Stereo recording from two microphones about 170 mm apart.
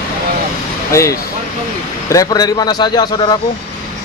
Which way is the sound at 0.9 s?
20° left (ahead or behind).